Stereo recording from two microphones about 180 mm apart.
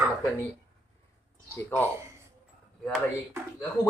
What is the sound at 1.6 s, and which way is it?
Speech, 10° left (ahead or behind).